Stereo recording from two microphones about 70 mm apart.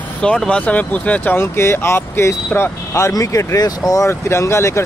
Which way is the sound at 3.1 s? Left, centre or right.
Left.